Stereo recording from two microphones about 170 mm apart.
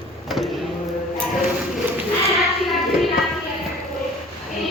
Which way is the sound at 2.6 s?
Centre (ahead or behind).